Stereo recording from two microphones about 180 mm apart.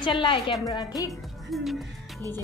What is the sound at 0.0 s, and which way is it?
A woman's voice, 30° left (ahead or behind).